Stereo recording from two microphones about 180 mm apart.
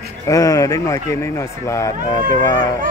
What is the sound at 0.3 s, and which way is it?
Speech, 20° left (ahead or behind).